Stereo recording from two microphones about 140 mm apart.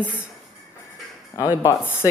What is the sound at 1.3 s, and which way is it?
Speech, 25° left (ahead or behind).